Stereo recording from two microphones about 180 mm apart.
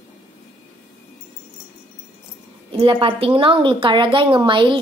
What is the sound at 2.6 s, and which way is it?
A woman's voice, 30° right (ahead or behind).